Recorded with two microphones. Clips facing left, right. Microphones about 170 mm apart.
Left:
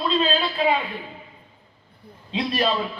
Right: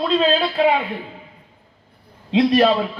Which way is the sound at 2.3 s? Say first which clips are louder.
Right 9 dB; 65° right (ahead or behind).